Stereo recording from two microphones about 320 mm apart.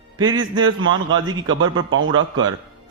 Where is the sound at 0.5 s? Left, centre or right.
Right.